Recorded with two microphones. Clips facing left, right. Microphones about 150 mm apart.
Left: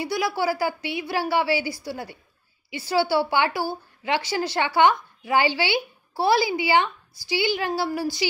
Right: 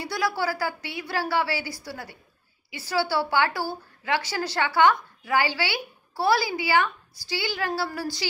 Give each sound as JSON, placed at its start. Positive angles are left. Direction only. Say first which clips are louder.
{"t": 0.0, "sound": "a woman's voice", "louder": "left 3 dB", "side_deg": 15}